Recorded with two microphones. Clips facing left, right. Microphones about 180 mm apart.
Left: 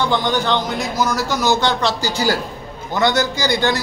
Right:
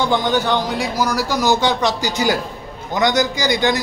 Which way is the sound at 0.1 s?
15° right (ahead or behind).